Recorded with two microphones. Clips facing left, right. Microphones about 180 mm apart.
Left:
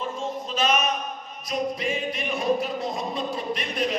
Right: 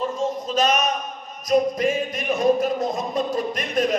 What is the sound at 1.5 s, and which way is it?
Music, 45° right (ahead or behind).